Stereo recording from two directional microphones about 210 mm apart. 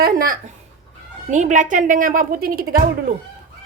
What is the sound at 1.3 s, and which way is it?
A woman's voice, 35° right (ahead or behind).